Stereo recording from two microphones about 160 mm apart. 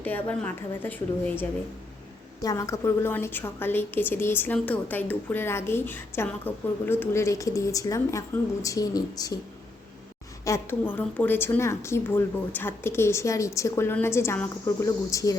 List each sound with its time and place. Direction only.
0.0 s a woman's voice: 10° left (ahead or behind)
10.4 s a woman's voice: 15° left (ahead or behind)